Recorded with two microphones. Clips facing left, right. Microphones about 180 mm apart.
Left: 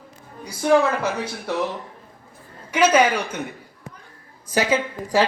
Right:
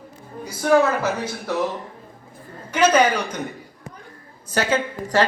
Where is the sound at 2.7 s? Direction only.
10° left (ahead or behind).